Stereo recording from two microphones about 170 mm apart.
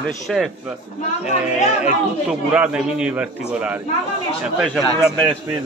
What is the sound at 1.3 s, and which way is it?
Speech, 40° left (ahead or behind).